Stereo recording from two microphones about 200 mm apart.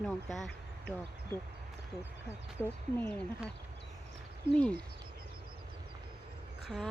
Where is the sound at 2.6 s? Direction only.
10° left (ahead or behind).